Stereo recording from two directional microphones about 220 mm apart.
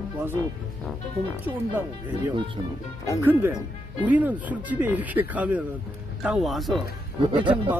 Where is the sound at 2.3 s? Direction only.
20° right (ahead or behind).